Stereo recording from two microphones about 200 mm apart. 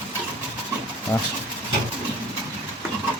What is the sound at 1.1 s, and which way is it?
Speech, 10° left (ahead or behind).